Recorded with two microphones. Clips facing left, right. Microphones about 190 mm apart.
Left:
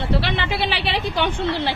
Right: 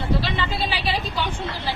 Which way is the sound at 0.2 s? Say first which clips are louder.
Left 2 dB; 70° left (ahead or behind).